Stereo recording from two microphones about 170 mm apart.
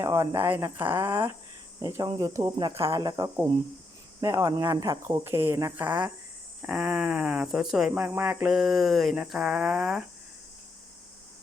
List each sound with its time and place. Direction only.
0.0 s speech: 15° right (ahead or behind)